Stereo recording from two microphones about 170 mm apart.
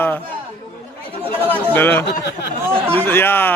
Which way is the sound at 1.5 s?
10° left (ahead or behind).